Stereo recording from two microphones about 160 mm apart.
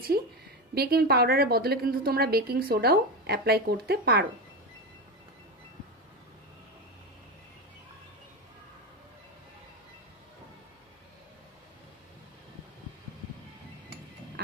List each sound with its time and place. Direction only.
0.7 s a woman's voice: 75° right (ahead or behind)